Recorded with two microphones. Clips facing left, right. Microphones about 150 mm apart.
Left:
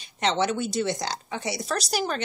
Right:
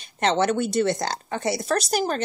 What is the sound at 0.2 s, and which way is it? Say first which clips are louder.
A woman's voice: right 3 dB; 50° right (ahead or behind).